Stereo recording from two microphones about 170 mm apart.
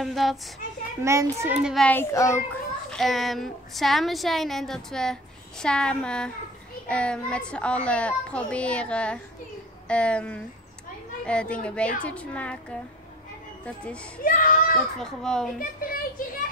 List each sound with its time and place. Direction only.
0.0 s a woman's voice: centre (ahead or behind)
1.0 s a child's voice: 15° right (ahead or behind)
1.6 s a woman's voice: centre (ahead or behind)
1.9 s a child's voice: 15° left (ahead or behind)
2.9 s a woman's voice: centre (ahead or behind)
14.2 s a child's voice: 55° left (ahead or behind)
15.0 s a woman's voice: 5° left (ahead or behind)
15.8 s a sound: 55° left (ahead or behind)